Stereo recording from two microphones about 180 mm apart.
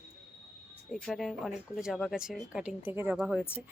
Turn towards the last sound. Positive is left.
turn(degrees=-5)  # may be behind; listen again after turning